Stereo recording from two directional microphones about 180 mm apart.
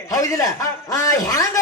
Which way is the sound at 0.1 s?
20° left (ahead or behind).